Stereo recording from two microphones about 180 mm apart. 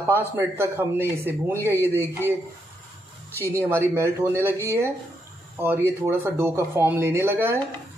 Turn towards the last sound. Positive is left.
turn(degrees=-10)  # may be behind; listen again after turning